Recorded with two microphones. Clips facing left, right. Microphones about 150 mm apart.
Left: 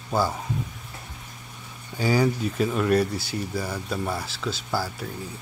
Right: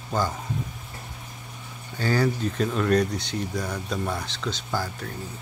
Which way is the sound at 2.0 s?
10° left (ahead or behind).